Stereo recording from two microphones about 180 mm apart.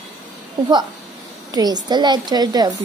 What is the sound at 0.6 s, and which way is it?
Speech, 25° right (ahead or behind).